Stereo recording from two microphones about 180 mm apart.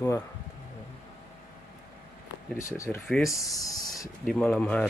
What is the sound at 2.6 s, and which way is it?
Speech, 15° left (ahead or behind).